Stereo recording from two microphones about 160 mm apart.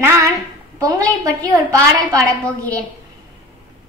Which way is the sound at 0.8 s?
20° right (ahead or behind).